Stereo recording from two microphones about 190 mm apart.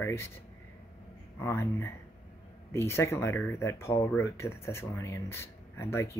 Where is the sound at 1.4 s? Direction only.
15° left (ahead or behind).